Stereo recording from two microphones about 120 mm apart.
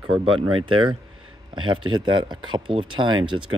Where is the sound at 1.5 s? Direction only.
40° right (ahead or behind).